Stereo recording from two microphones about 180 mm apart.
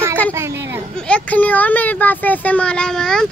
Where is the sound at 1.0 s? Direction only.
5° left (ahead or behind).